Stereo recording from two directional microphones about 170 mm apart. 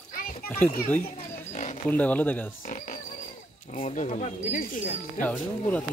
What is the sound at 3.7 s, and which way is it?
Speech, 45° left (ahead or behind).